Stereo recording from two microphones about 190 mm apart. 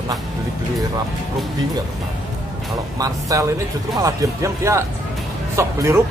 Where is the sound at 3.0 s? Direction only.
15° right (ahead or behind).